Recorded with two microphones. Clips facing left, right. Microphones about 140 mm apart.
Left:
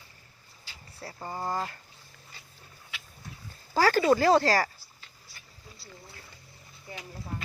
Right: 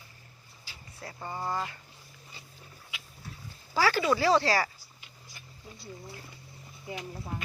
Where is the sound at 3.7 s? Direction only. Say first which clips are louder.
Left 4 dB; 45° left (ahead or behind).